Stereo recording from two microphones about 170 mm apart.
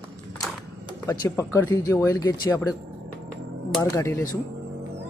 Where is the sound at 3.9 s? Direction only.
15° left (ahead or behind).